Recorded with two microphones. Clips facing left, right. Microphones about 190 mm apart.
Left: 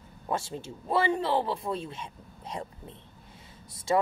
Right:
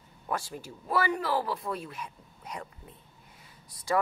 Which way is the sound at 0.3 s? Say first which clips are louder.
Left 2 dB; 25° left (ahead or behind).